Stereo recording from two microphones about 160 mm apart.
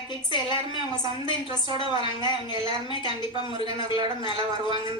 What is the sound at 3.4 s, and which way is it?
A man's voice, 30° left (ahead or behind).